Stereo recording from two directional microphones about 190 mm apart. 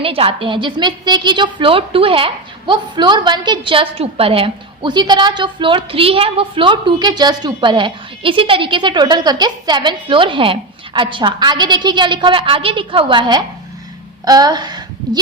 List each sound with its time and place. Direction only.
0.0 s a woman's voice: 30° right (ahead or behind)